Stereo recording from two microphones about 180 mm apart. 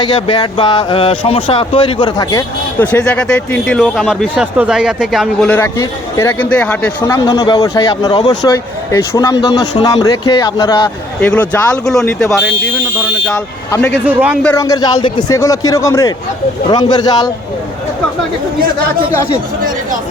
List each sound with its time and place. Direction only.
0.0 s speech: 25° left (ahead or behind)
2.8 s speech: 10° left (ahead or behind)
7.0 s speech: 20° left (ahead or behind)
11.2 s speech: 10° left (ahead or behind)
13.7 s speech: 15° left (ahead or behind)
14.0 s a man's voice: 10° right (ahead or behind)
14.4 s speech: 15° left (ahead or behind)